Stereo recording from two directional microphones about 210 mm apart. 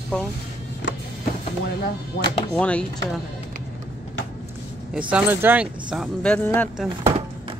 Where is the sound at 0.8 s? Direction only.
55° left (ahead or behind).